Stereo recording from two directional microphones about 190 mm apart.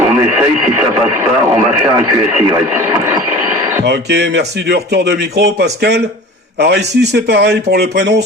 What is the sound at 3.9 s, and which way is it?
A man's voice, 65° right (ahead or behind).